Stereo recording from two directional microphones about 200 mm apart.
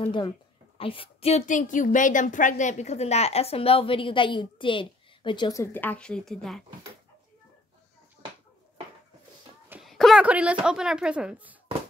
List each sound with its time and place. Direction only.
0.0 s a woman's voice: 25° left (ahead or behind); by 6.6 s centre (ahead or behind)
9.7 s speech: centre (ahead or behind)